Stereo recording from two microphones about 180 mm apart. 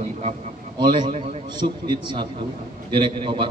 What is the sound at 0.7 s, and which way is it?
A man's voice, 25° right (ahead or behind).